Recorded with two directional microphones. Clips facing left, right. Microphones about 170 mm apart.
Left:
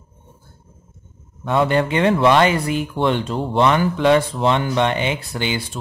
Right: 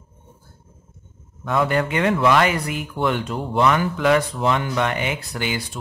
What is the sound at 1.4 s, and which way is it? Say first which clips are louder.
Speech: left 3 dB; 25° left (ahead or behind).